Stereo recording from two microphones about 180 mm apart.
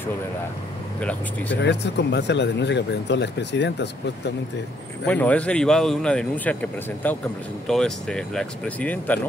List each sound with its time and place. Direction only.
1.6 s speech: 75° left (ahead or behind)
5.0 s speech: 10° left (ahead or behind)